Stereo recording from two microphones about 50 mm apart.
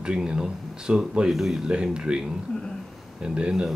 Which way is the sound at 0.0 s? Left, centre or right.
Centre.